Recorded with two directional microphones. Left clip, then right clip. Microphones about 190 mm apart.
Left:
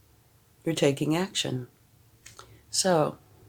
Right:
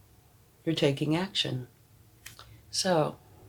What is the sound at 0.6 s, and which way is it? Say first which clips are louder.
Speech: left 2 dB; 50° left (ahead or behind).